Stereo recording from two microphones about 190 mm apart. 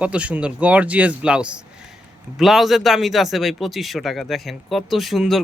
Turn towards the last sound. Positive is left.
turn(degrees=0)  # may be behind; listen again after turning